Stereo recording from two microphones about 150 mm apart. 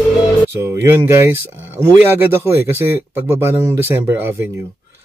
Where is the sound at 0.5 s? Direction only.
15° right (ahead or behind).